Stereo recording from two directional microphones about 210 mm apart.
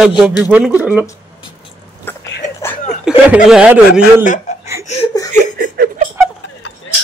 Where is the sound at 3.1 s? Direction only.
5° right (ahead or behind).